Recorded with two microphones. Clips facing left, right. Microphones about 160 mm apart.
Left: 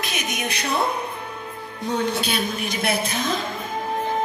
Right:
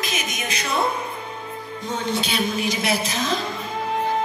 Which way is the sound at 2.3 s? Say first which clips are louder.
Right 2 dB; 55° left (ahead or behind).